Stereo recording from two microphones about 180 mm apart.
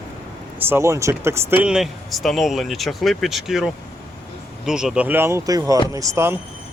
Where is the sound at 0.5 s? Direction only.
15° right (ahead or behind).